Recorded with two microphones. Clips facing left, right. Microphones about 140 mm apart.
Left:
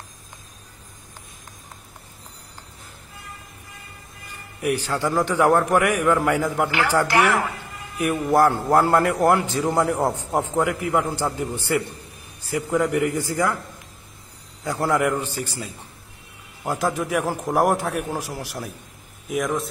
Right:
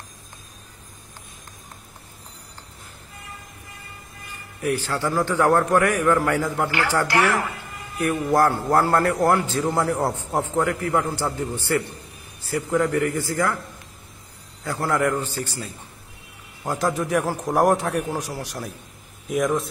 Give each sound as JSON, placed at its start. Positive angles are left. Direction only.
{"t": 4.6, "sound": "a man's voice", "side_deg": 15}
{"t": 14.6, "sound": "a man's voice", "side_deg": 15}